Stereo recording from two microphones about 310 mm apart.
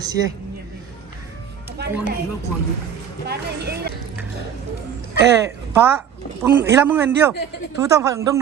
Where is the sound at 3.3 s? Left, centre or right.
Right.